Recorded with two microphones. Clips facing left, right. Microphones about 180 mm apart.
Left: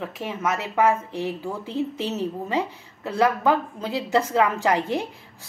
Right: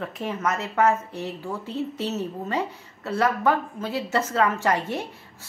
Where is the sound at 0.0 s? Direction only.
5° left (ahead or behind).